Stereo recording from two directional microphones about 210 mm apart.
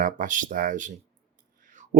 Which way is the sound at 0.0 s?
40° right (ahead or behind).